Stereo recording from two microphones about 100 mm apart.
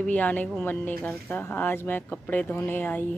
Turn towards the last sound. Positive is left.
turn(degrees=20)  # may be behind; listen again after turning